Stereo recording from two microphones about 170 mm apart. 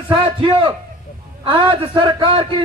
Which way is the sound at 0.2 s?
30° right (ahead or behind).